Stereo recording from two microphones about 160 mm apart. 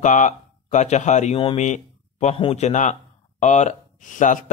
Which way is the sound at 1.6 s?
45° left (ahead or behind).